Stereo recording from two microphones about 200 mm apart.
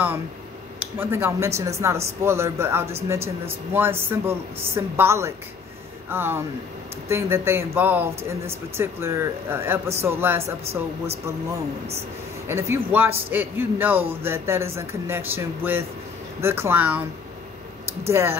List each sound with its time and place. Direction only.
0.9 s speech: 10° right (ahead or behind)
10.6 s speech: 30° right (ahead or behind)
12.4 s speech: 10° right (ahead or behind)
18.0 s speech: 15° right (ahead or behind)